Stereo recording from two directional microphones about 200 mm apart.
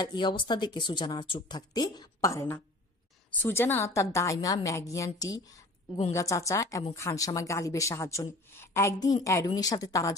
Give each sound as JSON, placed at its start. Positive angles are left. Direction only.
{"t": 0.0, "sound": "a woman's voice", "side_deg": 20}